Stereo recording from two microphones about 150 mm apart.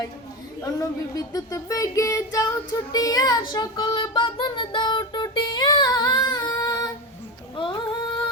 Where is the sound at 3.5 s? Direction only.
30° left (ahead or behind).